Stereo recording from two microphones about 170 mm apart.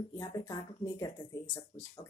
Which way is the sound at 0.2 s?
20° left (ahead or behind).